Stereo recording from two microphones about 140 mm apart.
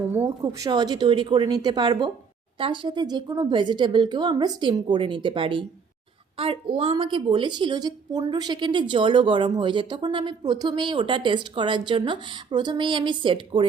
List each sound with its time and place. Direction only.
0.6 s a woman's voice: 30° right (ahead or behind)